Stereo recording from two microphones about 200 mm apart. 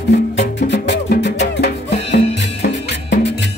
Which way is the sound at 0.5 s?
60° left (ahead or behind).